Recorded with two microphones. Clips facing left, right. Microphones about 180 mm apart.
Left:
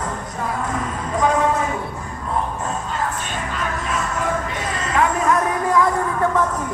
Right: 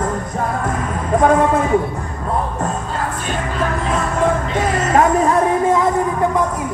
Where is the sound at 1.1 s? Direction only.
50° right (ahead or behind).